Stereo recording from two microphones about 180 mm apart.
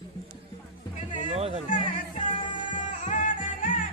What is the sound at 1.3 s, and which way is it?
Music, 35° right (ahead or behind).